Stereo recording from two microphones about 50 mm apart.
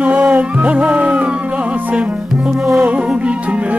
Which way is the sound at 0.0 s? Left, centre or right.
Right.